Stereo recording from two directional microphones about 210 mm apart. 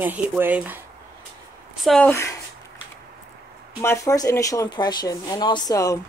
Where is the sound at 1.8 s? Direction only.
5° left (ahead or behind).